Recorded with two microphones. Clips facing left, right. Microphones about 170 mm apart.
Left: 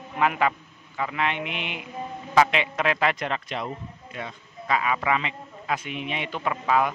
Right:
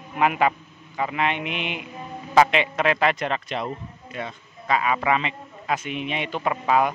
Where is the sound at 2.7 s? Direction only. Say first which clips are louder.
Right 2 dB; 30° right (ahead or behind).